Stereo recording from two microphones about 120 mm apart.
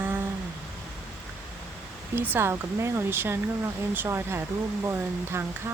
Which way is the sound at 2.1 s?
20° right (ahead or behind).